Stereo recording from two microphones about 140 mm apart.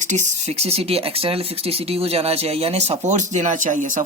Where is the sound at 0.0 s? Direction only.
60° right (ahead or behind).